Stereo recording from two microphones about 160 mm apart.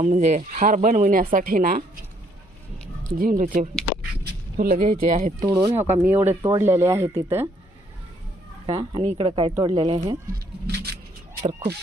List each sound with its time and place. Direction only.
0.0 s a woman's voice: 45° right (ahead or behind); by 1.8 s 65° right (ahead or behind)
3.2 s a woman's voice: 60° right (ahead or behind)
5.5 s speech: 20° right (ahead or behind)
8.6 s speech: 30° right (ahead or behind)
10.3 s a sound: 85° right